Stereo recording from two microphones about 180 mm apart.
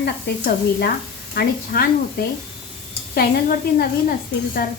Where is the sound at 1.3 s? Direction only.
55° left (ahead or behind).